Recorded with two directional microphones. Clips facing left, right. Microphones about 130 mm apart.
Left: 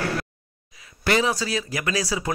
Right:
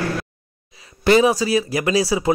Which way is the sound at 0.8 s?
25° right (ahead or behind).